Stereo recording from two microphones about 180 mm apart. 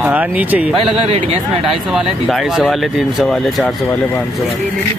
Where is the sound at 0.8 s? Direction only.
35° right (ahead or behind).